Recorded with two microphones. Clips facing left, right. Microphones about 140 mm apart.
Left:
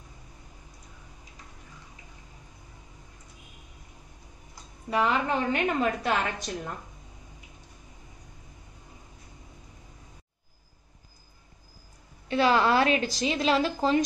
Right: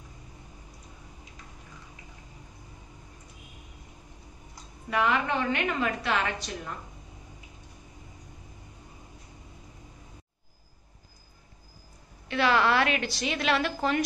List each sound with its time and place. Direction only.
4.8 s a woman's voice: 30° left (ahead or behind)
12.3 s a woman's voice: 30° left (ahead or behind)